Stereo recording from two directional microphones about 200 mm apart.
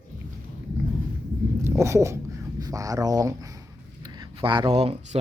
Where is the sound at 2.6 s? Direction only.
15° right (ahead or behind).